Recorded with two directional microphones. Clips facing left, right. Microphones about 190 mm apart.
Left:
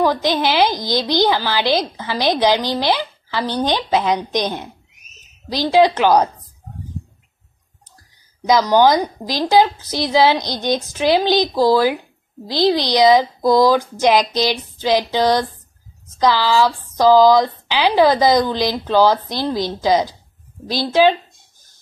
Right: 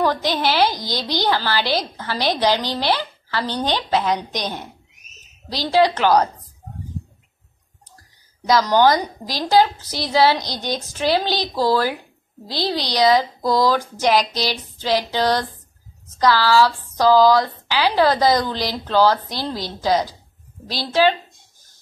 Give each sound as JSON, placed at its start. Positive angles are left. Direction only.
{"t": 0.0, "sound": "a woman's voice", "side_deg": 15}
{"t": 8.5, "sound": "a woman's voice", "side_deg": 15}